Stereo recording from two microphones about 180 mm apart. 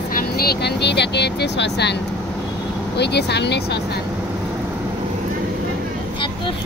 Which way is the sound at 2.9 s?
70° left (ahead or behind).